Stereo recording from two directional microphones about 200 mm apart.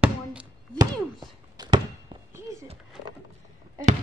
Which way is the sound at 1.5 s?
20° right (ahead or behind).